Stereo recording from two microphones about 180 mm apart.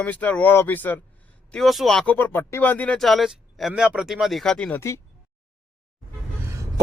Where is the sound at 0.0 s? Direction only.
10° left (ahead or behind).